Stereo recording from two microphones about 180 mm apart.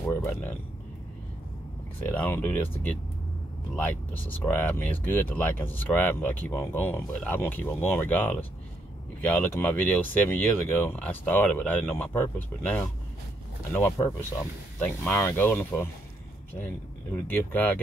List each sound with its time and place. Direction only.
0.1 s speech: 10° left (ahead or behind)
2.0 s speech: 10° left (ahead or behind)
17.3 s speech: 10° left (ahead or behind)